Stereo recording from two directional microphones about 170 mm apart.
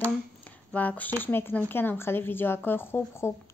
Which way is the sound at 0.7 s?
10° left (ahead or behind).